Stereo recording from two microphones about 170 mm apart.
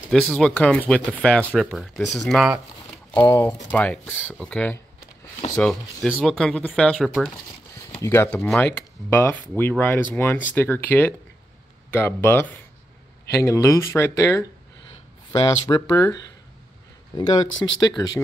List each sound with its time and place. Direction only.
0.1 s speech: 5° left (ahead or behind)
3.2 s speech: 20° left (ahead or behind); by 7.3 s centre (ahead or behind)
8.0 s speech: 15° left (ahead or behind)
17.3 s speech: 25° left (ahead or behind)